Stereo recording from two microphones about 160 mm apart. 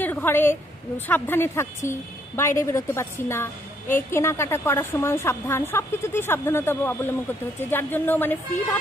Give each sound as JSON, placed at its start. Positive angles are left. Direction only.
{"t": 0.0, "sound": "a woman's voice", "side_deg": 10}